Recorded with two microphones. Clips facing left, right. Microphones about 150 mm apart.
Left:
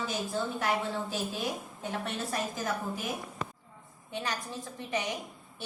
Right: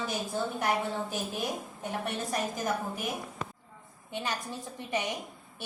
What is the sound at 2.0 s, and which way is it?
Speech, 15° right (ahead or behind).